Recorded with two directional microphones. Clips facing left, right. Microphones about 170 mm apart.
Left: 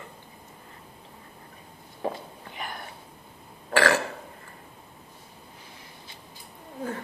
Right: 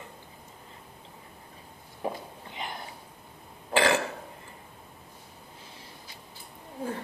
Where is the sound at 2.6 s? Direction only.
20° right (ahead or behind).